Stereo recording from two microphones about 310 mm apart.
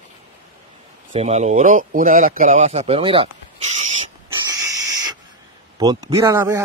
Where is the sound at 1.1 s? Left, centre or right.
Right.